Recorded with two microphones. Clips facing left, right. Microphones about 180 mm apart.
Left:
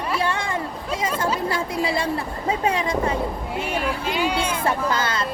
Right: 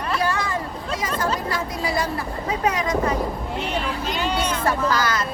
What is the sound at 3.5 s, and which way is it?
Speech, 10° left (ahead or behind).